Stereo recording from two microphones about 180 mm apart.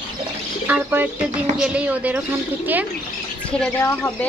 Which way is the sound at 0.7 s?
10° right (ahead or behind).